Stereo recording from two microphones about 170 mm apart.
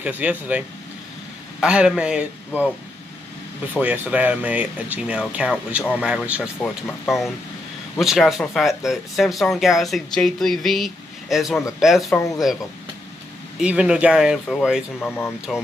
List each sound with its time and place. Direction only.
0.0 s speech: 10° right (ahead or behind)
3.7 s speech: 10° right (ahead or behind)
12.1 s speech: 20° left (ahead or behind)
13.6 s speech: 5° right (ahead or behind)
15.0 s speech: 10° left (ahead or behind)